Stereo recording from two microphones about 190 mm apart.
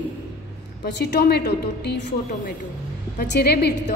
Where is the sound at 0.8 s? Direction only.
60° left (ahead or behind).